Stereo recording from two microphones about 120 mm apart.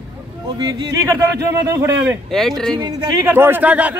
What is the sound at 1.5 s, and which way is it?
Speech, 25° right (ahead or behind).